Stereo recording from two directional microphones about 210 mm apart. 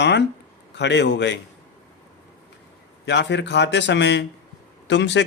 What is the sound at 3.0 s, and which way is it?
Speech, 55° left (ahead or behind).